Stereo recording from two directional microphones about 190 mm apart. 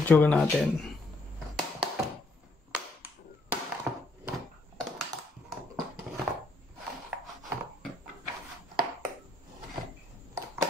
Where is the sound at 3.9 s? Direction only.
10° right (ahead or behind).